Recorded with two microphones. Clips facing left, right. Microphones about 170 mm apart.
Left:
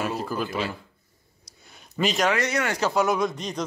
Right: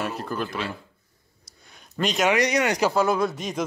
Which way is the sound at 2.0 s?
5° left (ahead or behind).